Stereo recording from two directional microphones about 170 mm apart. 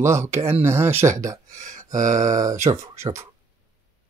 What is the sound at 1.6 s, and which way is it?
Speech, 45° right (ahead or behind).